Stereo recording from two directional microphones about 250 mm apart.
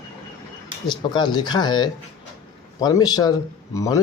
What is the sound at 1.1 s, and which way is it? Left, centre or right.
Speech, centre.